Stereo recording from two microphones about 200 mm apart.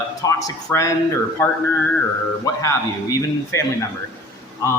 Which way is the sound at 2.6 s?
15° left (ahead or behind).